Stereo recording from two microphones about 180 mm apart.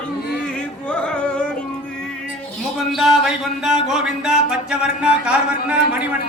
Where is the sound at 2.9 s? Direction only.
Centre (ahead or behind).